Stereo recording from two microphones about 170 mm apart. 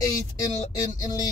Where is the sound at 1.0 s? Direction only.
20° left (ahead or behind).